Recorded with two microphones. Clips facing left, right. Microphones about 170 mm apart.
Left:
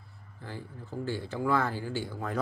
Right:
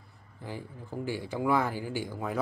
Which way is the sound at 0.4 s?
15° right (ahead or behind).